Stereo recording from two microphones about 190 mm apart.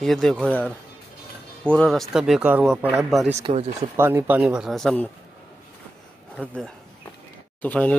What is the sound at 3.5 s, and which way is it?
Speech, 30° right (ahead or behind).